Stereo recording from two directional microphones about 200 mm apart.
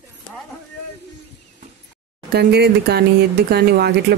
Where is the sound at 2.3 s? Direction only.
55° right (ahead or behind).